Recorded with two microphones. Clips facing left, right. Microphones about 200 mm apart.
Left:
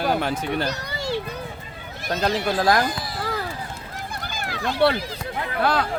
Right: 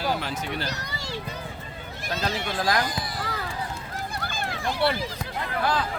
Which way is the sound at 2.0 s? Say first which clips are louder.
Left 6 dB; 40° left (ahead or behind).